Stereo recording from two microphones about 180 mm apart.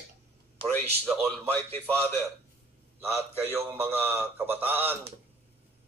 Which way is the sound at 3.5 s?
10° right (ahead or behind).